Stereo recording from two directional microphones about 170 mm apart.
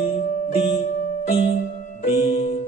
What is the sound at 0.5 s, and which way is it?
Music, 30° left (ahead or behind).